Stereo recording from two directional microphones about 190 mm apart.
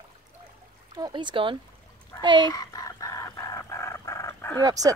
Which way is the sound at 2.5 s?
20° left (ahead or behind).